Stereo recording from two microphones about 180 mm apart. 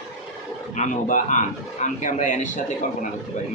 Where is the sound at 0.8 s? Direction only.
45° left (ahead or behind).